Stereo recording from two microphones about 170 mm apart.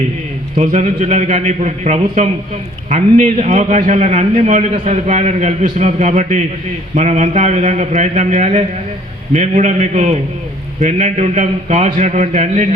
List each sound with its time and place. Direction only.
0.5 s a man's voice: 40° right (ahead or behind)